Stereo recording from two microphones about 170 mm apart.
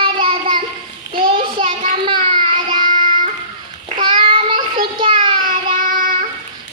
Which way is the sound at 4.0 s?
30° right (ahead or behind).